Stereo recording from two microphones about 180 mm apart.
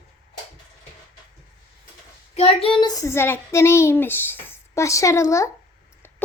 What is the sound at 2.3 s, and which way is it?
A child's voice, 35° left (ahead or behind).